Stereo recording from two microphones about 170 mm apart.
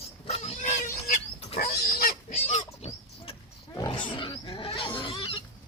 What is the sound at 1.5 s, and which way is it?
Pig, 65° left (ahead or behind).